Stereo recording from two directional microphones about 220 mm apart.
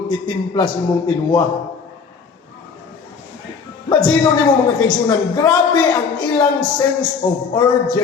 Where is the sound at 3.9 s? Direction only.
20° left (ahead or behind).